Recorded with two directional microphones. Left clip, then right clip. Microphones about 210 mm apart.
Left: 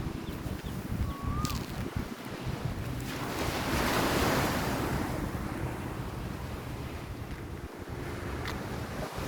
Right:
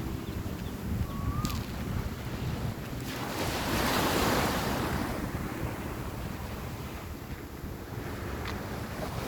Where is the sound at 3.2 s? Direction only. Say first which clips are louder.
Right 1 dB; 55° right (ahead or behind).